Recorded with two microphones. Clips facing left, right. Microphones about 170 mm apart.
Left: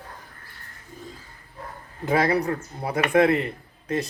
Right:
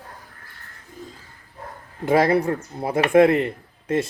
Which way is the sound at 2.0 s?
25° right (ahead or behind).